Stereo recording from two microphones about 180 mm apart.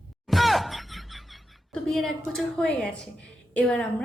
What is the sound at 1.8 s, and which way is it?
A woman's voice, centre (ahead or behind).